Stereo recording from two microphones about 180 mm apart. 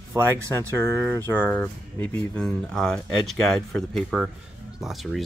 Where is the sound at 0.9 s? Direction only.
10° left (ahead or behind).